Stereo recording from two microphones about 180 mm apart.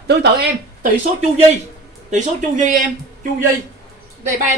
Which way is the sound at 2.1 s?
45° right (ahead or behind).